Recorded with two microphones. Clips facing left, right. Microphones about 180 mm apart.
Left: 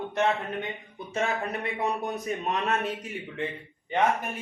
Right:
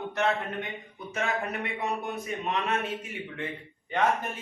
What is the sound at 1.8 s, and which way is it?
A man's voice, 40° left (ahead or behind).